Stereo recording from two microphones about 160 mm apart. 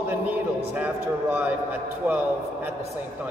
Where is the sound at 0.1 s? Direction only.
10° right (ahead or behind).